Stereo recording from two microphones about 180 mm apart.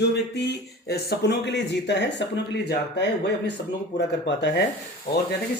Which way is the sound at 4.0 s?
75° left (ahead or behind).